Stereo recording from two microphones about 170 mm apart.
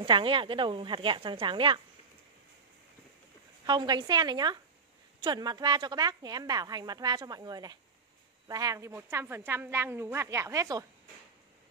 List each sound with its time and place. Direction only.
0.0 s a woman's voice: 30° right (ahead or behind)
3.6 s a woman's voice: 25° right (ahead or behind)